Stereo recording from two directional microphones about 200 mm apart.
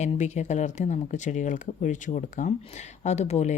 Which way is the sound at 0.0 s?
35° left (ahead or behind).